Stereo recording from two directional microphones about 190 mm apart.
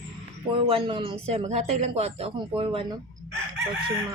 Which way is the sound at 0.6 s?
30° right (ahead or behind).